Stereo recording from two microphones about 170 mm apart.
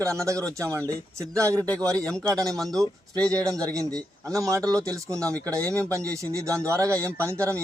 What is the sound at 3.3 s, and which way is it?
Speech, 20° right (ahead or behind).